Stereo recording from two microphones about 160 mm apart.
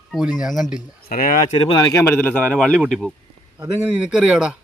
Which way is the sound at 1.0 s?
60° left (ahead or behind).